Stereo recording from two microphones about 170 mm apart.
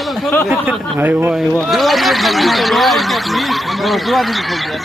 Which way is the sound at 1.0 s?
10° right (ahead or behind).